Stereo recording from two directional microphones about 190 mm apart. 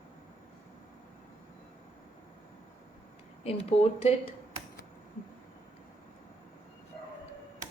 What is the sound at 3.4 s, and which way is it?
Speech, 30° left (ahead or behind).